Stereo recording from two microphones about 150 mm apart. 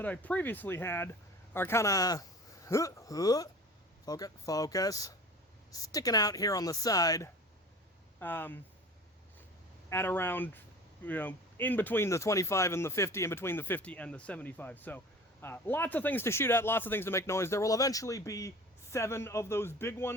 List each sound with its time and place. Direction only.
0.0 s speech: 10° left (ahead or behind)
8.2 s speech: 15° left (ahead or behind)
9.9 s speech: 15° left (ahead or behind)